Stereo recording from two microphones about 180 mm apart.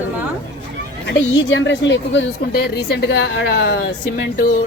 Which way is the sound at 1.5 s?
80° left.